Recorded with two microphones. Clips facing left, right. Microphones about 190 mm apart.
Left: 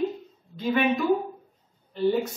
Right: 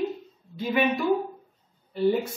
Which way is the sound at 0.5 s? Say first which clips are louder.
Left 1 dB; 10° right (ahead or behind).